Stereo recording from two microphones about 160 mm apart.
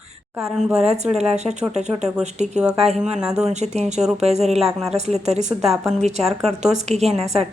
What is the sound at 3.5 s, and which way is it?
A woman's voice, 45° right (ahead or behind).